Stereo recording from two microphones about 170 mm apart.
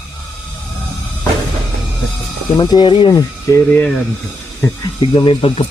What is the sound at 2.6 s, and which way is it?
Speech, 25° left (ahead or behind).